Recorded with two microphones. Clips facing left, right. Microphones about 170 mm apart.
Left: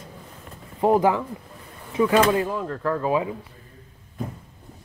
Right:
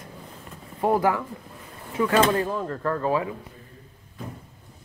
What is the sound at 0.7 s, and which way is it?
Speech, 20° left (ahead or behind).